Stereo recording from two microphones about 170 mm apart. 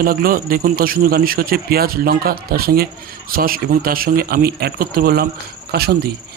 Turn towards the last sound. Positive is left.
turn(degrees=-70)  # may be behind; listen again after turning